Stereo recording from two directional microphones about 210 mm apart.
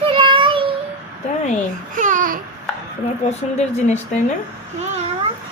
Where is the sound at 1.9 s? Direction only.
40° right (ahead or behind).